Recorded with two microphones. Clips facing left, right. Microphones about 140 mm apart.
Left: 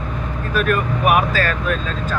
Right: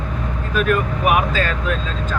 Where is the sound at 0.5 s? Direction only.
20° right (ahead or behind).